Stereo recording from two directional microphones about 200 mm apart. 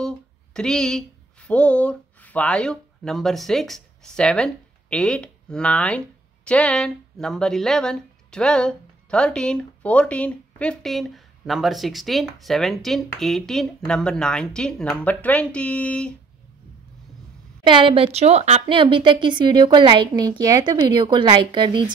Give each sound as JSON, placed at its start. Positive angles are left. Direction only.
{"t": 0.0, "sound": "speech", "side_deg": 5}
{"t": 17.6, "sound": "a woman's voice", "side_deg": -25}